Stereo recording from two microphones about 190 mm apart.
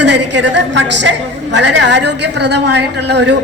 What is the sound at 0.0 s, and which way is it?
A woman's voice, 70° right (ahead or behind).